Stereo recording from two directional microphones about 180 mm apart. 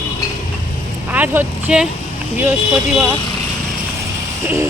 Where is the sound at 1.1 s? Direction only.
10° right (ahead or behind).